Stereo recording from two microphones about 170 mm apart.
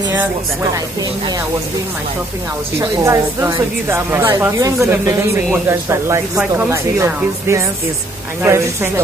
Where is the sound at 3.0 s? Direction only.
15° right (ahead or behind).